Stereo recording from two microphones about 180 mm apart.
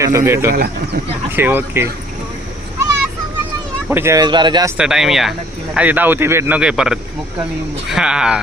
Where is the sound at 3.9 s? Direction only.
15° right (ahead or behind).